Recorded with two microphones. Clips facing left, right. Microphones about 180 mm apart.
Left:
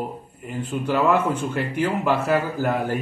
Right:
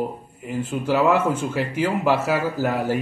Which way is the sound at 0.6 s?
10° right (ahead or behind).